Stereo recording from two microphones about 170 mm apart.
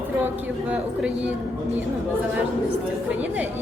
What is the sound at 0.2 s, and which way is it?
A woman's voice, 10° right (ahead or behind).